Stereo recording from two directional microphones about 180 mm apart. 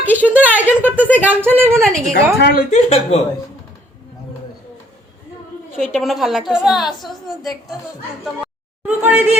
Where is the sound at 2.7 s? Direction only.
40° left (ahead or behind).